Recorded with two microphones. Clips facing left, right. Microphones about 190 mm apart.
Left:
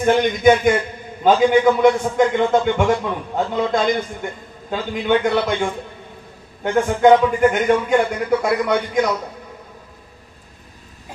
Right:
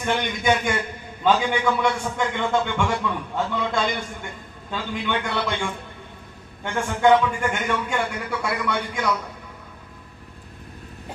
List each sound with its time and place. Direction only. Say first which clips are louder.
0.0 s a man's voice: left 10 dB; 40° left (ahead or behind)